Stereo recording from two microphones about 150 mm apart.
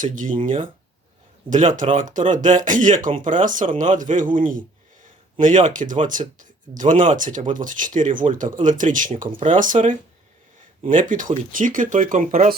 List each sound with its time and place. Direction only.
0.0 s speech: 60° right (ahead or behind)
10.8 s speech: 60° right (ahead or behind)